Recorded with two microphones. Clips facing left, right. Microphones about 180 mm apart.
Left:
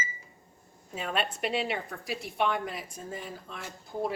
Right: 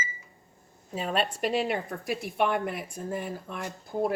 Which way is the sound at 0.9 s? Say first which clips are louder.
Right 3 dB; 40° right (ahead or behind).